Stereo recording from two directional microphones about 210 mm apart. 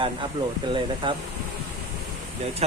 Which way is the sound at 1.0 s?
20° right (ahead or behind).